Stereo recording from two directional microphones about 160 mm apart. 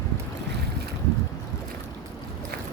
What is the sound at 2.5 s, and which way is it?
Boat, 70° right (ahead or behind).